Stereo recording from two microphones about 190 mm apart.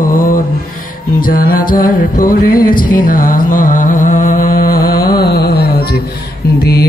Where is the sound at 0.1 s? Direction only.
45° left (ahead or behind).